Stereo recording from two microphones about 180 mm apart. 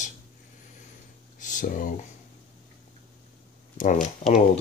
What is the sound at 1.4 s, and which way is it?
Speech, 45° left (ahead or behind).